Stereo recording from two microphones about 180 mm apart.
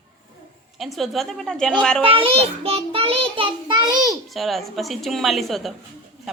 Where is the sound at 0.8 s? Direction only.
Centre (ahead or behind).